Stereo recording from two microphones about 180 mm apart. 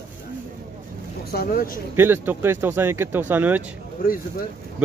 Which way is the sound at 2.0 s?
10° right (ahead or behind).